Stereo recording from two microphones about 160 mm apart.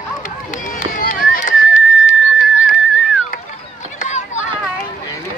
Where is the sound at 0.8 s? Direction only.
55° left (ahead or behind).